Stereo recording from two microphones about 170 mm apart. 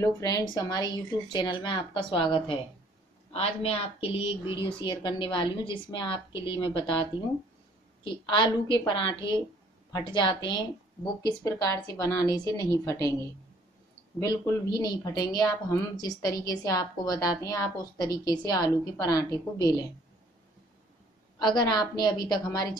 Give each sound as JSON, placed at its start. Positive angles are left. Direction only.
{"t": 0.0, "sound": "a woman's voice", "side_deg": 20}
{"t": 14.2, "sound": "a woman's voice", "side_deg": 20}
{"t": 21.4, "sound": "a woman's voice", "side_deg": 25}